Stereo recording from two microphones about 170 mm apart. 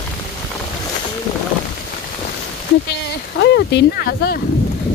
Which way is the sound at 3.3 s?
85° left.